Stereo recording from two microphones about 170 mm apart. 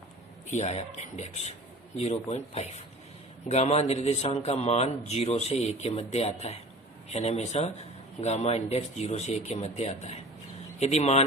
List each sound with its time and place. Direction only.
0.5 s a man's voice: 40° left (ahead or behind)